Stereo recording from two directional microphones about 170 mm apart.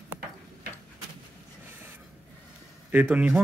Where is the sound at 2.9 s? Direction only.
10° right (ahead or behind).